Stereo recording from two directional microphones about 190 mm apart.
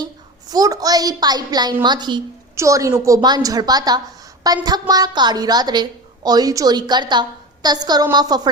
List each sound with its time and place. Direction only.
0.4 s a woman's voice: 20° right (ahead or behind)